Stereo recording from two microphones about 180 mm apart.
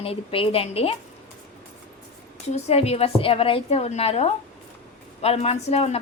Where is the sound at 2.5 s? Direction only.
35° left (ahead or behind).